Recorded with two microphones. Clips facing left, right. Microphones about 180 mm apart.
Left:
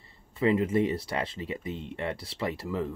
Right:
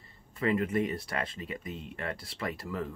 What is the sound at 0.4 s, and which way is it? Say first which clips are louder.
Speech: left 4 dB; 25° left (ahead or behind).